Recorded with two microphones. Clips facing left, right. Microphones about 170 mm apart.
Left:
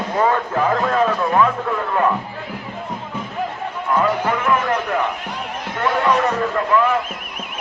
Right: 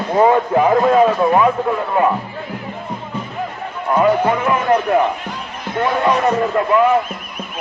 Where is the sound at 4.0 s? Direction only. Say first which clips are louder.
Right 6 dB; 20° right (ahead or behind).